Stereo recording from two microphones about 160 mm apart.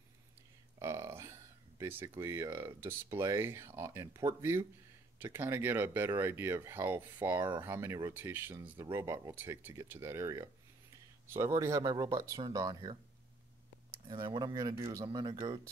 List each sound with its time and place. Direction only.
0.7 s speech: 15° right (ahead or behind)
14.0 s speech: 30° right (ahead or behind)